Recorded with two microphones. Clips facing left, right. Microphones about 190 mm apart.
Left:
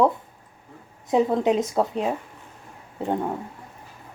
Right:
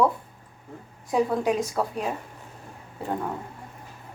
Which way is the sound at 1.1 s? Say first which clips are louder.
Left 3 dB; 25° left (ahead or behind).